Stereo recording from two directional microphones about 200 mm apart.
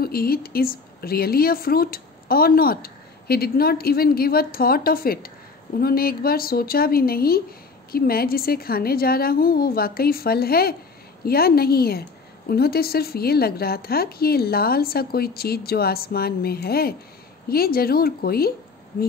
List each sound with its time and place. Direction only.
0.0 s speech: 50° left (ahead or behind)